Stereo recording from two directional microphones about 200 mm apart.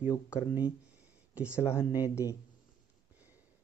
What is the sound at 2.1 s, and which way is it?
Speech, 15° left (ahead or behind).